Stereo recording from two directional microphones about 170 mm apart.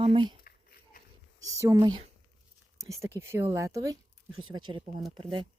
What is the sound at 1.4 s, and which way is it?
Speech, 20° right (ahead or behind).